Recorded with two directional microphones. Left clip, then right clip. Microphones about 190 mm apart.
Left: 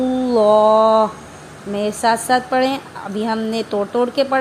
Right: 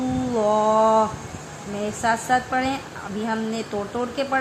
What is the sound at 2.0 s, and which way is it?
A woman's voice, 45° left (ahead or behind).